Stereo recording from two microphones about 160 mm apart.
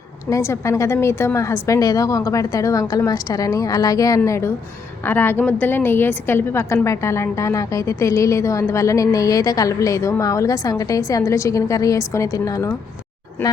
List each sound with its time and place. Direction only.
0.3 s a woman's voice: 20° left (ahead or behind)